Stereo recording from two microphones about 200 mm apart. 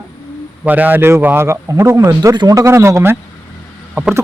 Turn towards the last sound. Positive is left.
turn(degrees=-5)  # may be behind; listen again after turning